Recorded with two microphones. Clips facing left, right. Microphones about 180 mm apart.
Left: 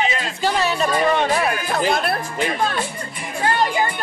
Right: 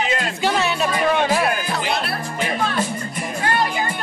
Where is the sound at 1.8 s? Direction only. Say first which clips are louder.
Left 4 dB; 50° left (ahead or behind).